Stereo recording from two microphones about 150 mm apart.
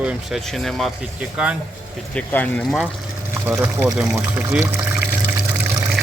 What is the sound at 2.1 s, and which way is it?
Speech, 10° left (ahead or behind).